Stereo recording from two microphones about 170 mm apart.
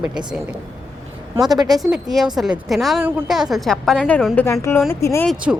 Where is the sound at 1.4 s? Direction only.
25° right (ahead or behind).